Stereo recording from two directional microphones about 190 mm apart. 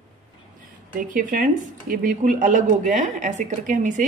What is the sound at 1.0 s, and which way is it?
A woman's voice, 45° right (ahead or behind).